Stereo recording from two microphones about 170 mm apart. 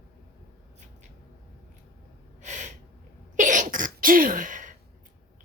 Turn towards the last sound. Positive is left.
turn(degrees=-50)  # may be behind; listen again after turning